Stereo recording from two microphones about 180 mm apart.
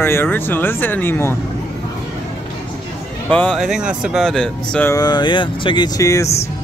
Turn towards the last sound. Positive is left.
turn(degrees=20)  # may be behind; listen again after turning